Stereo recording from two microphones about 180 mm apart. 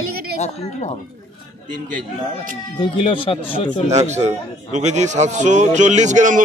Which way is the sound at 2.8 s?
30° left (ahead or behind).